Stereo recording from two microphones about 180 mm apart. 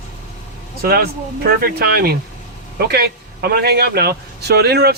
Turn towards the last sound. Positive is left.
turn(degrees=-65)  # may be behind; listen again after turning